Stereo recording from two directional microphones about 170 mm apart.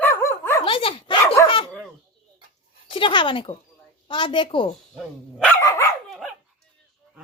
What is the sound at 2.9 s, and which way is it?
A woman's voice, 30° left (ahead or behind).